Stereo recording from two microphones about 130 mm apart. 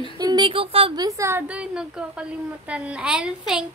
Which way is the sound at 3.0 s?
5° right (ahead or behind).